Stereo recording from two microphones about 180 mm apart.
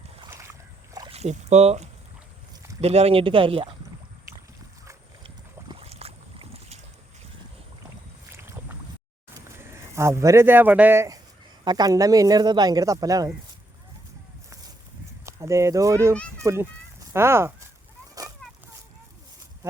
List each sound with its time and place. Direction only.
0.3 s boat: 15° right (ahead or behind)
1.1 s speech: 35° right (ahead or behind)
5.2 s boat: 30° right (ahead or behind)
8.3 s boat: 15° right (ahead or behind)
9.3 s a sound: 15° right (ahead or behind)
11.6 s speech: 20° right (ahead or behind)
15.3 s a child's voice: 15° right (ahead or behind)